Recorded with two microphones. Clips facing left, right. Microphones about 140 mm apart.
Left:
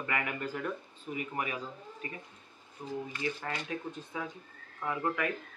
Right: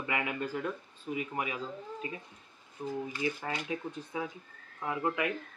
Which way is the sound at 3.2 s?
15° right (ahead or behind).